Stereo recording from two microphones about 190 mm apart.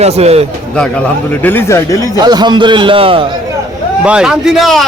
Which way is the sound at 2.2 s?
20° right (ahead or behind).